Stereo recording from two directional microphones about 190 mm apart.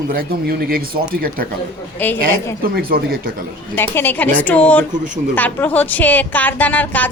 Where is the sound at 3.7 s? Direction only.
10° left (ahead or behind).